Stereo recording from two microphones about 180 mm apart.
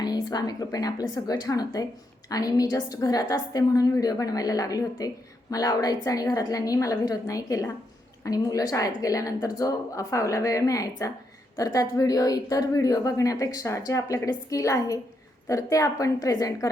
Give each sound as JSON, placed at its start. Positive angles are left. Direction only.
{"t": 0.0, "sound": "a woman's voice", "side_deg": 20}